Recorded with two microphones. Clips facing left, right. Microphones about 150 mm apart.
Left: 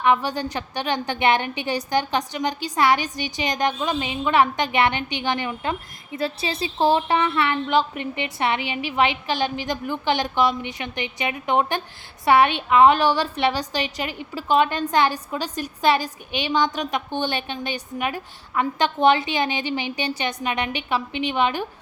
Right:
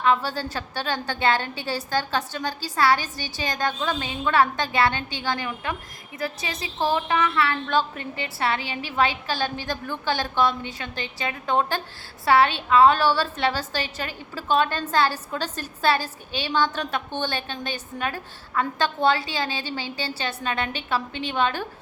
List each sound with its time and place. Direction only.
0.0 s a woman's voice: 15° left (ahead or behind)